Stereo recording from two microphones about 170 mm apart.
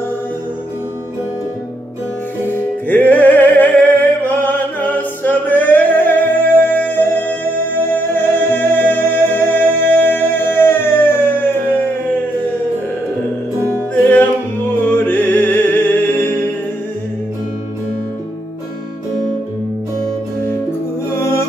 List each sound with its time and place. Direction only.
2.4 s music: 10° left (ahead or behind)
13.7 s music: 10° left (ahead or behind)
21.1 s music: 15° left (ahead or behind)